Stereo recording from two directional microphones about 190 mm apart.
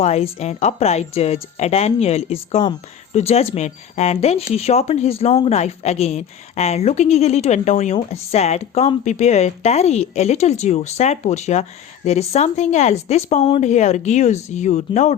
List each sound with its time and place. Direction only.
0.0 s a woman's voice: 35° left (ahead or behind)